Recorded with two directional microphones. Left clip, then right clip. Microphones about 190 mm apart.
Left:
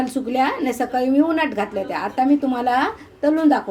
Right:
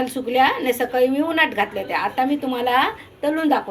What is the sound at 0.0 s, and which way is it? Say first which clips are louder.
A woman's voice: right 2 dB; 45° left (ahead or behind).